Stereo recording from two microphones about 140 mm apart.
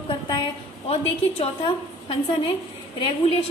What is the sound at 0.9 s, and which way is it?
A woman's voice, 45° left (ahead or behind).